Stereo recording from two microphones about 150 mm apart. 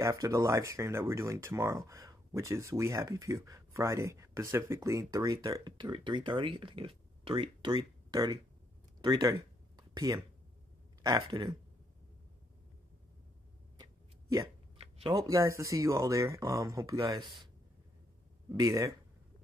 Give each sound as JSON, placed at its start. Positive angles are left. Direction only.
{"t": 0.0, "sound": "speech", "side_deg": -20}
{"t": 9.0, "sound": "a sound", "side_deg": -30}
{"t": 11.0, "sound": "speech", "side_deg": -25}
{"t": 15.1, "sound": "speech", "side_deg": -20}
{"t": 18.5, "sound": "speech", "side_deg": -20}